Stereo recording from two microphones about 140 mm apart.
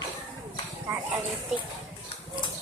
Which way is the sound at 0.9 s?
20° right (ahead or behind).